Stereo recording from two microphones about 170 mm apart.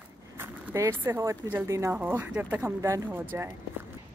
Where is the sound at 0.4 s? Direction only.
15° right (ahead or behind).